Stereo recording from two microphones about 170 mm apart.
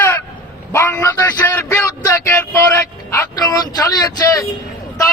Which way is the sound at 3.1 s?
20° left (ahead or behind).